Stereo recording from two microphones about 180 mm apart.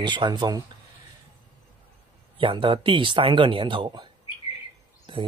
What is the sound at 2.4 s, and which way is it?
Speech, 30° right (ahead or behind).